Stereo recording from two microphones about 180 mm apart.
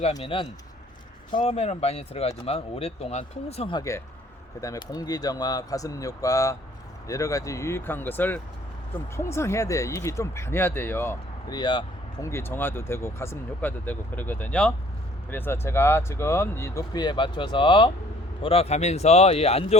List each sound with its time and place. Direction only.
0.0 s speech: 35° left (ahead or behind)
12.3 s speech: 10° left (ahead or behind); by 19.6 s 35° left (ahead or behind)